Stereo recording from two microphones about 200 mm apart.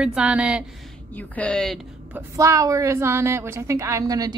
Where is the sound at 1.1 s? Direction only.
10° left (ahead or behind).